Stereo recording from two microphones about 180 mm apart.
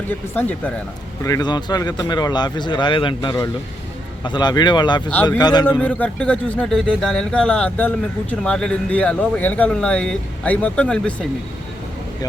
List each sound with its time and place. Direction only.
0.1 s speech: 10° left (ahead or behind)
1.2 s speech: 20° left (ahead or behind)
5.6 s speech: 10° left (ahead or behind)